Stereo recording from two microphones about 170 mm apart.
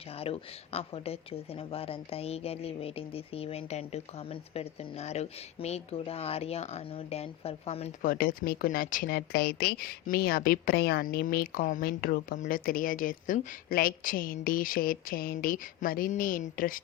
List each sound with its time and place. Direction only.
0.2 s a woman's voice: 35° left (ahead or behind)
8.0 s speech: 55° left (ahead or behind)